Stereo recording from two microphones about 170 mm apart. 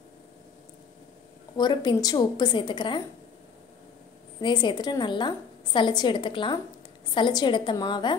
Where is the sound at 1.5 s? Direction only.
25° left (ahead or behind).